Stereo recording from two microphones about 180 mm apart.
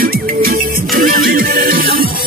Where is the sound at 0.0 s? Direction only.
55° right (ahead or behind).